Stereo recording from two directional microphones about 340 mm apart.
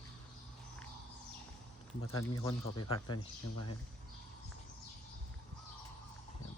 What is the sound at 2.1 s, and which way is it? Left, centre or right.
Speech, centre.